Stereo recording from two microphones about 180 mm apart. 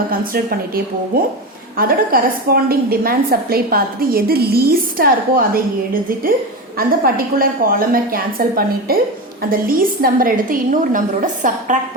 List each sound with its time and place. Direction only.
0.1 s a woman's voice: 55° right (ahead or behind)
6.7 s a woman's voice: 55° right (ahead or behind)